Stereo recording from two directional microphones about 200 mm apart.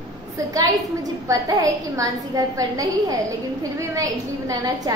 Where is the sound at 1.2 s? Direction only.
15° right (ahead or behind).